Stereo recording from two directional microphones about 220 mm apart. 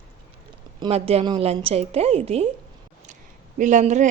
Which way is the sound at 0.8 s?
25° right (ahead or behind).